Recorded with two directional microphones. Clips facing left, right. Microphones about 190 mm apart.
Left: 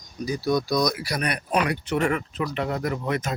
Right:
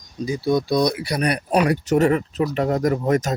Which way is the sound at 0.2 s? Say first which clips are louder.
Right 3 dB; 25° right (ahead or behind).